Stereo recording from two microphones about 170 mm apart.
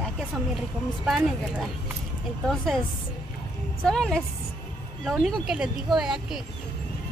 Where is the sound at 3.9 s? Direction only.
5° left (ahead or behind).